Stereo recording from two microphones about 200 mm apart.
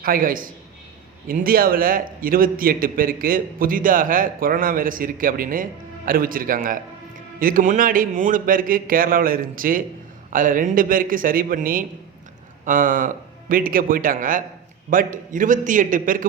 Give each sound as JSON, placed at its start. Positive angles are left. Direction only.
{"t": 0.0, "sound": "a man's voice", "side_deg": -45}